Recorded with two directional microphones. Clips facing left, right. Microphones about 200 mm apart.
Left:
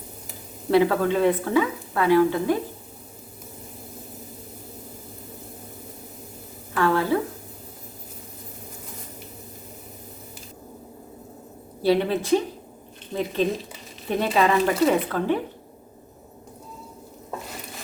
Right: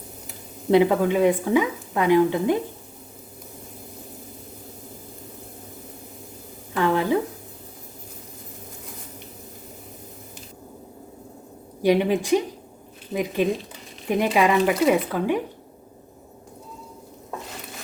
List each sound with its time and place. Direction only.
0.7 s a woman's voice: 20° right (ahead or behind)
6.7 s a sound: 20° right (ahead or behind)
11.8 s a woman's voice: 15° right (ahead or behind)